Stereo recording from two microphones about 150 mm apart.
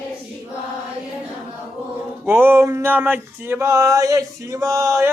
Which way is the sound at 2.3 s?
15° right (ahead or behind).